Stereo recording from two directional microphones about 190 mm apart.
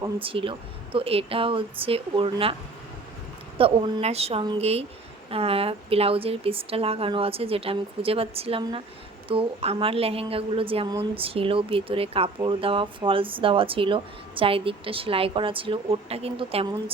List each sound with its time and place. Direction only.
0.0 s a woman's voice: 30° right (ahead or behind)
3.6 s a woman's voice: 25° right (ahead or behind)